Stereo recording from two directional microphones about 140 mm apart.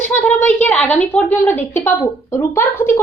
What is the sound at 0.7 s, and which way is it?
Speech, 10° left (ahead or behind).